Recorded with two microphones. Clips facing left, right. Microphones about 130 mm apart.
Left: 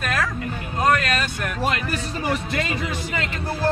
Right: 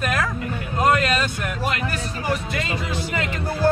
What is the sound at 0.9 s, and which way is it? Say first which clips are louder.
Speech: right 1 dB; 20° right (ahead or behind).